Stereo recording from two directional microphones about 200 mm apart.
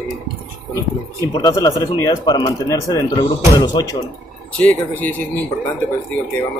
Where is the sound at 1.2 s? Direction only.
20° left (ahead or behind).